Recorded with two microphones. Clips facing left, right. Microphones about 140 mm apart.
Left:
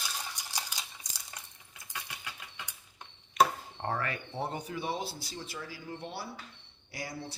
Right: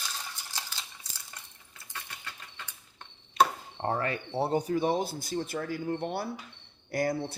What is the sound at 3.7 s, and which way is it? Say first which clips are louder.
Speech: right 5 dB; 25° right (ahead or behind).